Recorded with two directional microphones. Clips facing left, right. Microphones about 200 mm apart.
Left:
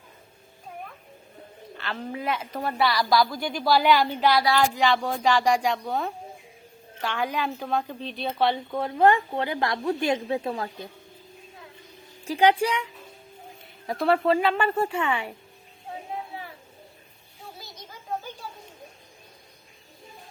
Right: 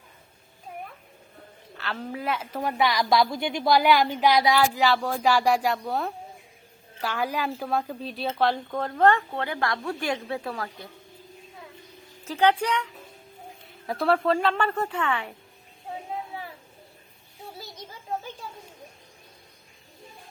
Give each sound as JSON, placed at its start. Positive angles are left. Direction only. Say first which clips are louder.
{"t": 1.7, "sound": "a woman's voice", "louder": "even", "side_deg": 0}
{"t": 4.6, "sound": "a woman's voice", "louder": "even", "side_deg": -5}
{"t": 12.2, "sound": "speech", "louder": "left 2 dB", "side_deg": 10}
{"t": 13.8, "sound": "a woman's voice", "louder": "left 1 dB", "side_deg": 0}